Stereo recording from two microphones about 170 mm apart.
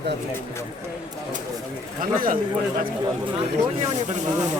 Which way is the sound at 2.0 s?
55° right (ahead or behind).